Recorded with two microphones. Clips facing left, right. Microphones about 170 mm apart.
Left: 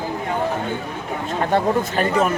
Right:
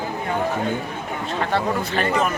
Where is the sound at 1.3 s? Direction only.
45° left (ahead or behind).